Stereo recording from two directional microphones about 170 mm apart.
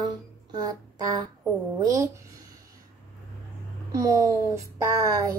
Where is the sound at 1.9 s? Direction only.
20° right (ahead or behind).